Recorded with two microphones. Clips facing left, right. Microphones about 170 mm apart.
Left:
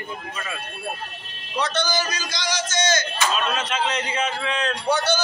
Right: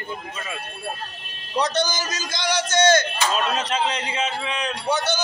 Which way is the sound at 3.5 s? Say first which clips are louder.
Right 1 dB; 35° right (ahead or behind).